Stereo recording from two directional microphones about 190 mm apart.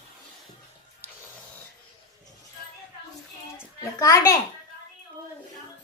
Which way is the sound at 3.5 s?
20° left (ahead or behind).